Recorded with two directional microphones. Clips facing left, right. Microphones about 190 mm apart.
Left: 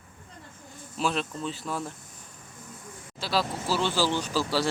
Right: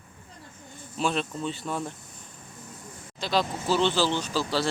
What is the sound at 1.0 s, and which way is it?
Speech, centre (ahead or behind).